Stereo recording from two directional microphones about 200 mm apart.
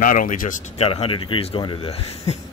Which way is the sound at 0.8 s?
25° left (ahead or behind).